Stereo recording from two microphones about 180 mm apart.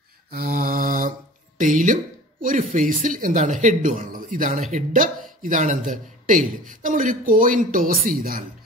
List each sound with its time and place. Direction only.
0.3 s mantra: 50° right (ahead or behind)
1.6 s a man's voice: 45° right (ahead or behind)